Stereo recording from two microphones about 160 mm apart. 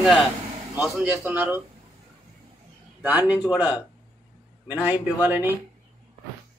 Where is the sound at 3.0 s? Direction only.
10° right (ahead or behind).